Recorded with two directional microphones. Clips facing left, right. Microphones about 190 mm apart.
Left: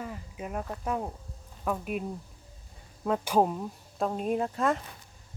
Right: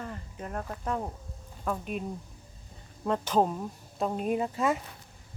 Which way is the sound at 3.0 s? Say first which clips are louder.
Left 1 dB; 10° left (ahead or behind).